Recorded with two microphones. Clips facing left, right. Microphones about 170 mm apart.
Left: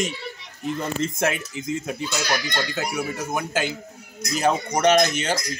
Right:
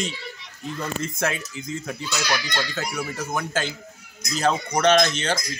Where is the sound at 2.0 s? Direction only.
45° left (ahead or behind).